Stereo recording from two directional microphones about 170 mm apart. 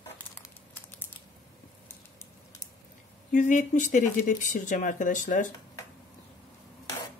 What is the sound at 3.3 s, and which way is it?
Speech, 45° left (ahead or behind).